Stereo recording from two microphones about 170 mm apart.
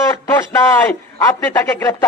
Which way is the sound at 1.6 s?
15° left (ahead or behind).